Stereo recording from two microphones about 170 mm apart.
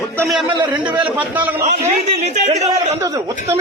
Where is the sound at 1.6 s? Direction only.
40° right (ahead or behind).